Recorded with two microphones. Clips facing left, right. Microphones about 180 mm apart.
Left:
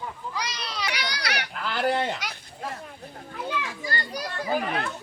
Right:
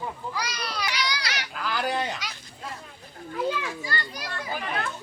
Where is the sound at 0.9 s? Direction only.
60° left (ahead or behind).